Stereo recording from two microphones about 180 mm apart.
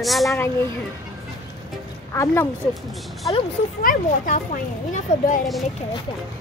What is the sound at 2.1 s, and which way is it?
Speech, 15° left (ahead or behind).